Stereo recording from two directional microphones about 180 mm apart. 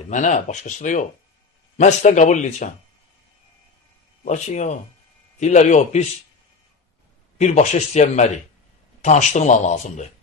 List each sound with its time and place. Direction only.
0.1 s speech: 45° left (ahead or behind)
4.2 s speech: 40° left (ahead or behind)
7.3 s speech: 40° left (ahead or behind)